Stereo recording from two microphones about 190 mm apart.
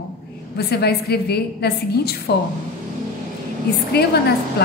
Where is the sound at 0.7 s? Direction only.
55° left (ahead or behind).